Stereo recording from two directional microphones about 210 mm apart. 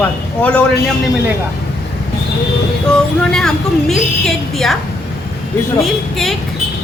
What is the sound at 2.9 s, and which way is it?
A woman's voice, centre (ahead or behind).